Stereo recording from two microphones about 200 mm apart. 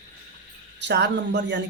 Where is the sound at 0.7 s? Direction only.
60° right (ahead or behind).